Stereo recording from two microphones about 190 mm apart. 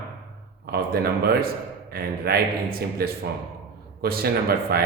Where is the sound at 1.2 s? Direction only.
55° right (ahead or behind).